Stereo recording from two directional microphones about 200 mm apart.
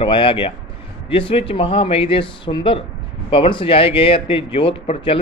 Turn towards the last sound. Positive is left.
turn(degrees=25)  # may be behind; listen again after turning